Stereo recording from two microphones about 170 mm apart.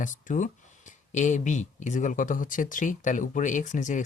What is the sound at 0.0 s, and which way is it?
Speech, 50° left (ahead or behind).